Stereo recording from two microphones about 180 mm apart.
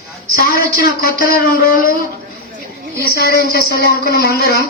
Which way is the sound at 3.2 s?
60° left (ahead or behind).